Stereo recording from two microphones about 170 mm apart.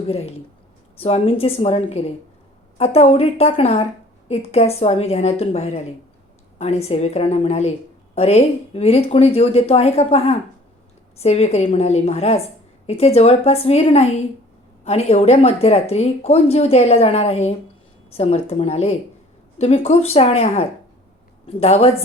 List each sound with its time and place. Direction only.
0.1 s speech: 35° left (ahead or behind)